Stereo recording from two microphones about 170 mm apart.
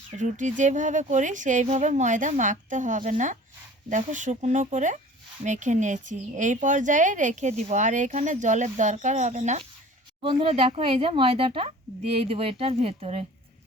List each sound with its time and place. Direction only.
0.2 s speech: 45° right (ahead or behind)
10.2 s speech: 30° right (ahead or behind)